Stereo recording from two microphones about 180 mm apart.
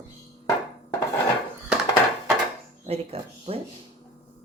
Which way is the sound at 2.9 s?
35° right (ahead or behind).